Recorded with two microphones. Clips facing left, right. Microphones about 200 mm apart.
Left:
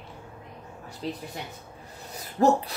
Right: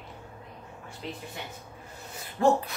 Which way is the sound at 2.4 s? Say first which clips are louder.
Left 2 dB; 40° left (ahead or behind).